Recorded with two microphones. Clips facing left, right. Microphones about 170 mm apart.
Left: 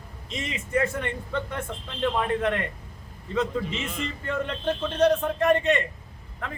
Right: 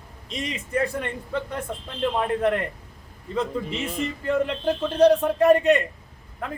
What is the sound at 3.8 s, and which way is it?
Speech, 40° right (ahead or behind).